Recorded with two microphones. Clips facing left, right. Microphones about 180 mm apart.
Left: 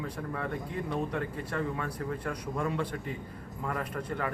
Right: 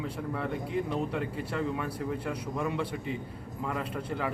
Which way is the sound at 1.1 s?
10° right (ahead or behind).